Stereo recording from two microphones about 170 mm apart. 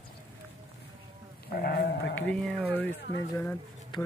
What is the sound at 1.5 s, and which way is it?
Sheep, 65° left (ahead or behind).